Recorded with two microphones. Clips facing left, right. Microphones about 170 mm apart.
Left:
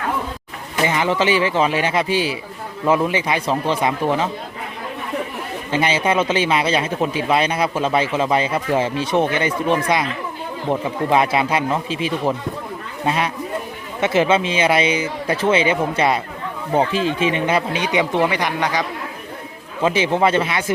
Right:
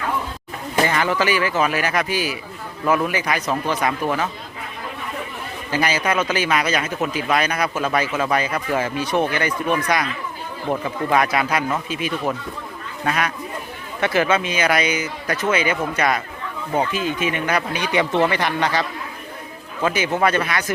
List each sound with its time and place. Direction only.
0.9 s speech: 20° left (ahead or behind)
5.7 s speech: 25° left (ahead or behind)
19.8 s speech: 25° left (ahead or behind)